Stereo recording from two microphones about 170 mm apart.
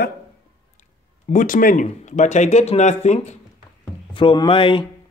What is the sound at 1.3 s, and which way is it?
Speech, 50° left (ahead or behind).